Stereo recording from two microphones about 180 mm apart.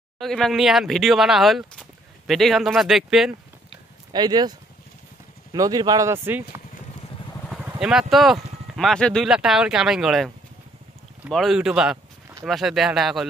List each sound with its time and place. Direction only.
0.2 s speech: centre (ahead or behind)
3.7 s a sound: 25° right (ahead or behind)
5.5 s speech: 20° right (ahead or behind)
7.8 s speech: 5° right (ahead or behind)